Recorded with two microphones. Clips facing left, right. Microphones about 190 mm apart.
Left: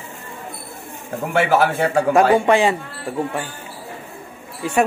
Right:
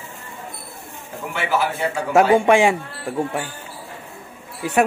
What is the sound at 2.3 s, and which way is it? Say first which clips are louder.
Speech: right 1 dB; 15° right (ahead or behind).